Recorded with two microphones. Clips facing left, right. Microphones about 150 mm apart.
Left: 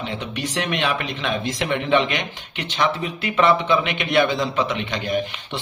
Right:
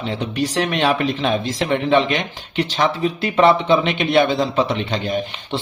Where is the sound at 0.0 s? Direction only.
35° right (ahead or behind).